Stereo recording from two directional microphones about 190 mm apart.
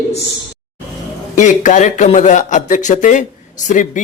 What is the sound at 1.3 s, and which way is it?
Speech, 40° left (ahead or behind).